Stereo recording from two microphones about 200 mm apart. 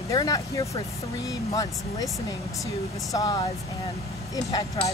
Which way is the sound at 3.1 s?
20° left (ahead or behind).